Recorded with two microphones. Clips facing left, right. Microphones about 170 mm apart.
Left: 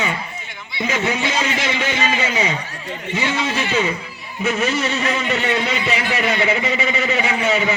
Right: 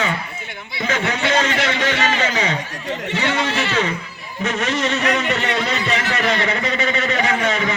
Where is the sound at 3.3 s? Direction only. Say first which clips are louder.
Even; 70° right (ahead or behind).